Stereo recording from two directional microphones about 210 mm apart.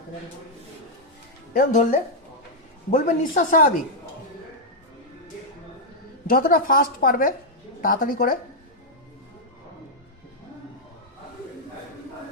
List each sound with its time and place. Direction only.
1.5 s speech: 35° left (ahead or behind)
6.2 s a woman's voice: 45° left (ahead or behind)